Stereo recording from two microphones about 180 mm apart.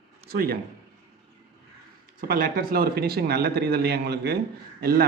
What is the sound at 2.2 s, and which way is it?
Speech, 55° right (ahead or behind).